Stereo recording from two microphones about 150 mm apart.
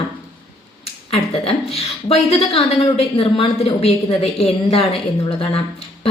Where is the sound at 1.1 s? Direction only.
40° left (ahead or behind).